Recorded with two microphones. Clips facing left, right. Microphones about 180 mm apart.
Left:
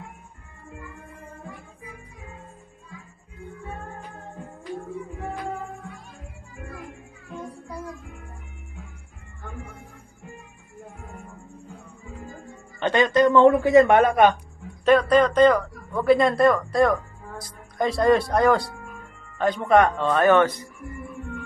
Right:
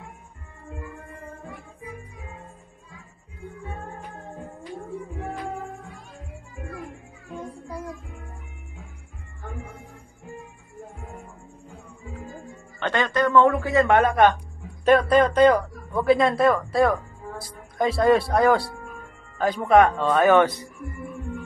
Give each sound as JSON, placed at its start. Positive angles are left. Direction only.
{"t": 12.7, "sound": "speech", "side_deg": 15}
{"t": 15.0, "sound": "speech", "side_deg": -10}
{"t": 20.3, "sound": "speech", "side_deg": -10}